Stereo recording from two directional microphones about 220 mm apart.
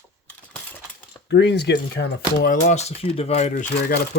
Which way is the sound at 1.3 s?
50° left (ahead or behind).